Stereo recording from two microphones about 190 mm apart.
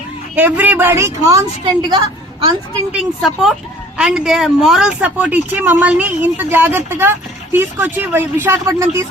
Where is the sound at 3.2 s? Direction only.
Centre (ahead or behind).